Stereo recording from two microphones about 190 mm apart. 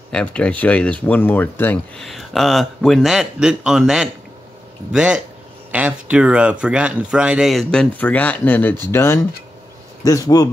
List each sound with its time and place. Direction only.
0.1 s speech: 5° left (ahead or behind)